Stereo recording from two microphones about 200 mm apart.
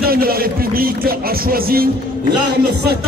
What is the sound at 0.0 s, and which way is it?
A man's voice, 50° right (ahead or behind).